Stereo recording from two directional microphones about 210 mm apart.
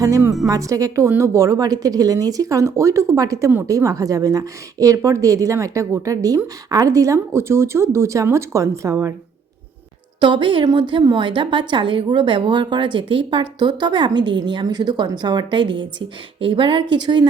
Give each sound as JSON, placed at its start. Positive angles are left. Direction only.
{"t": 0.0, "sound": "a woman's voice", "side_deg": -15}
{"t": 10.2, "sound": "a woman's voice", "side_deg": -25}